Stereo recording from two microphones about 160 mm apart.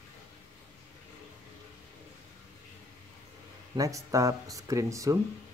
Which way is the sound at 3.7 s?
20° right (ahead or behind).